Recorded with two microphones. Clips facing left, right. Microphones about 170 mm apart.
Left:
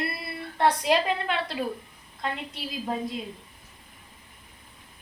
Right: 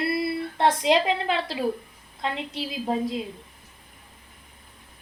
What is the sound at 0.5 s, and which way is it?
Child singing, 20° right (ahead or behind).